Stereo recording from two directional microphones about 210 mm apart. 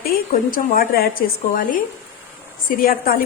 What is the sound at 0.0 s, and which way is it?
A woman's voice, 40° left (ahead or behind).